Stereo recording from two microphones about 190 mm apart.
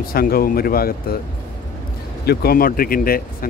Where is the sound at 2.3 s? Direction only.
50° left (ahead or behind).